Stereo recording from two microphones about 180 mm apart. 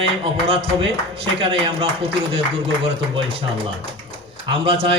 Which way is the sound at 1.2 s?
30° right (ahead or behind).